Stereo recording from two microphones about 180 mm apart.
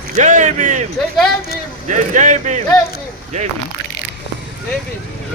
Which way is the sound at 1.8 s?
45° right (ahead or behind).